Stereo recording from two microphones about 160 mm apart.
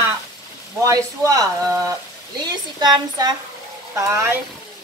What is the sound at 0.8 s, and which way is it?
A woman's voice, 20° right (ahead or behind).